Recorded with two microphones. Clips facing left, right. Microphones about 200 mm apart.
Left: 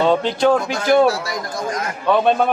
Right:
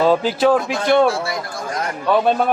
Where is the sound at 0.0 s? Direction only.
5° right (ahead or behind).